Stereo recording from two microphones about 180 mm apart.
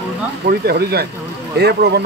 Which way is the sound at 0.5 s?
60° right (ahead or behind).